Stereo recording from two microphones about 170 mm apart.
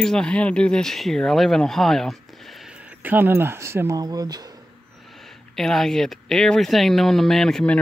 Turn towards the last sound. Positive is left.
turn(degrees=5)  # may be behind; listen again after turning